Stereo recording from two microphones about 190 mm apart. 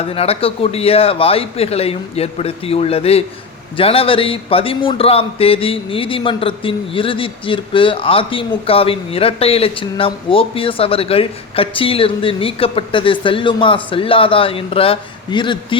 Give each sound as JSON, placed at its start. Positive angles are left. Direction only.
{"t": 0.0, "sound": "a man's voice", "side_deg": 30}